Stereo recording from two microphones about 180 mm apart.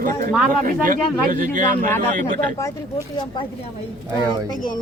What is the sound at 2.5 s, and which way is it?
Speech, 15° left (ahead or behind).